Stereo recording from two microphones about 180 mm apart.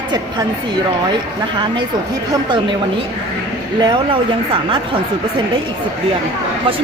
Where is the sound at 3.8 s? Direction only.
25° right (ahead or behind).